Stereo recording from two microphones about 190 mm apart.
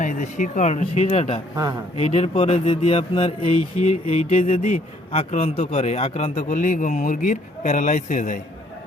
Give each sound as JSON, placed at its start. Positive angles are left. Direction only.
{"t": 0.0, "sound": "a man's voice", "side_deg": 40}